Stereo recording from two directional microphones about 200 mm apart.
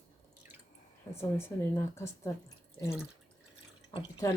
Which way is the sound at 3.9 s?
20° left (ahead or behind).